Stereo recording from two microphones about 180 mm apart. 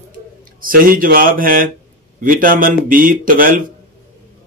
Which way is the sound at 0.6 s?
50° right (ahead or behind).